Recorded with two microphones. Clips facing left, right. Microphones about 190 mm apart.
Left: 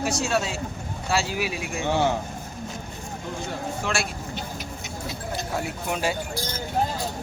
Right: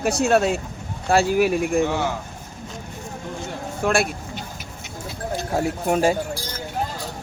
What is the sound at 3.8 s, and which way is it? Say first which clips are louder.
Speech: right 10 dB; 55° right (ahead or behind).